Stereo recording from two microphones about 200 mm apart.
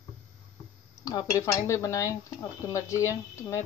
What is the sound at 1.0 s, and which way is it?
Speech, 15° left (ahead or behind).